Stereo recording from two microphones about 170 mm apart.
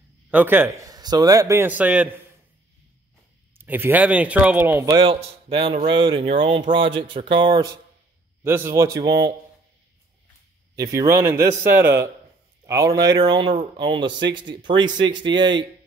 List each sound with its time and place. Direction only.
0.3 s a man's voice: 10° right (ahead or behind)
3.5 s a man's voice: 10° right (ahead or behind)
4.9 s a man's voice: 30° right (ahead or behind)
10.8 s a man's voice: 20° right (ahead or behind)